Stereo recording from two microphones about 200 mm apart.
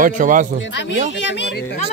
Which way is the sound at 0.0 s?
40° right (ahead or behind).